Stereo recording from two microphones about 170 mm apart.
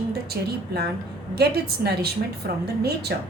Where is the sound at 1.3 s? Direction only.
70° right (ahead or behind).